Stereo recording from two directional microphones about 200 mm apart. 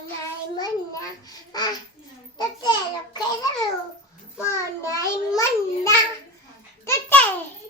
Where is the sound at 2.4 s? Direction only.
20° left (ahead or behind).